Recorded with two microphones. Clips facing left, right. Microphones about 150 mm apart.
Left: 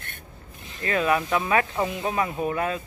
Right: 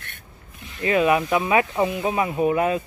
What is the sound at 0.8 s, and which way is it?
Speech, 15° right (ahead or behind).